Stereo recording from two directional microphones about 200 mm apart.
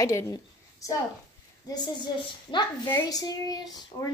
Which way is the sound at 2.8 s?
10° left (ahead or behind).